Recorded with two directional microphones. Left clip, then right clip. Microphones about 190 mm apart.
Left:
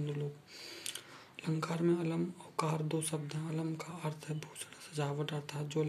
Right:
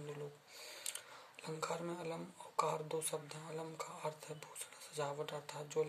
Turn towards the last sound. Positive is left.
turn(degrees=-5)  # may be behind; listen again after turning